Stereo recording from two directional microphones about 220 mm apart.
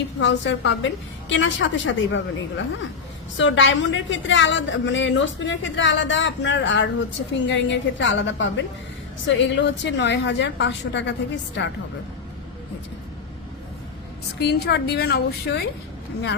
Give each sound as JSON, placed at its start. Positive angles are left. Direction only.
{"t": 0.2, "sound": "a woman's voice", "side_deg": 55}
{"t": 14.3, "sound": "a woman's voice", "side_deg": 50}